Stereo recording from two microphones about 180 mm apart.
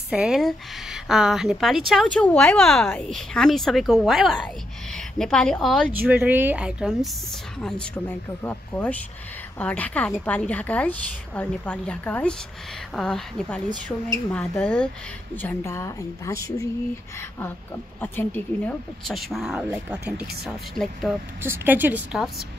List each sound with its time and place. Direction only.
0.1 s a woman's voice: 5° right (ahead or behind)
5.9 s a woman's voice: 10° right (ahead or behind); by 16.6 s 15° left (ahead or behind)
18.0 s speech: 10° left (ahead or behind)
21.4 s a woman's voice: 10° right (ahead or behind)